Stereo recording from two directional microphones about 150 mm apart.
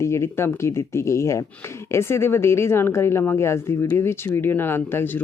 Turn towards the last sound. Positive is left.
turn(degrees=15)  # may be behind; listen again after turning